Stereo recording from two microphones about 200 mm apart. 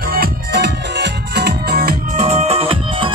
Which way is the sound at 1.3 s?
50° right (ahead or behind).